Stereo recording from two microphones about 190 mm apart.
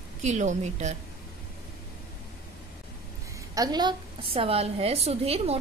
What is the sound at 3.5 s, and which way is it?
A woman's voice, 20° right (ahead or behind).